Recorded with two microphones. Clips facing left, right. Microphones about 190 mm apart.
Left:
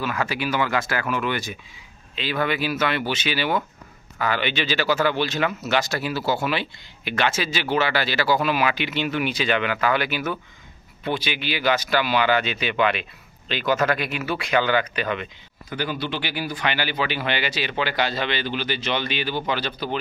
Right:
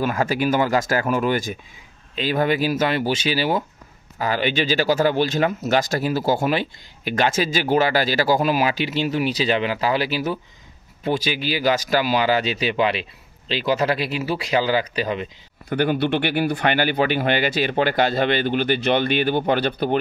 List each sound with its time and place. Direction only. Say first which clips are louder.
0.0 s speech: right 5 dB; 45° right (ahead or behind)
15.7 s speech: right 8 dB; 55° right (ahead or behind)